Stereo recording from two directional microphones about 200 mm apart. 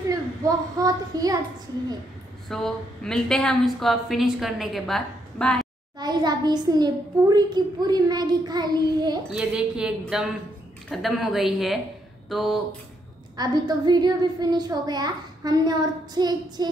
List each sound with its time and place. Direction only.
0.4 s a child's voice: 15° right (ahead or behind)
2.4 s a woman's voice: centre (ahead or behind)
5.9 s a child's voice: 20° right (ahead or behind)
9.4 s a woman's voice: 5° right (ahead or behind)
13.4 s a child's voice: 20° right (ahead or behind)